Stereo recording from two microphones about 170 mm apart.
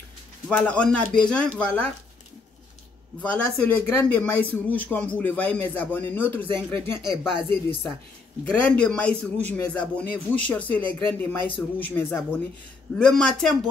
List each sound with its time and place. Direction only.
0.5 s a man's voice: 5° left (ahead or behind)
3.2 s a man's voice: 5° left (ahead or behind)
6.4 s speech: 30° right (ahead or behind)
8.5 s a man's voice: 5° left (ahead or behind)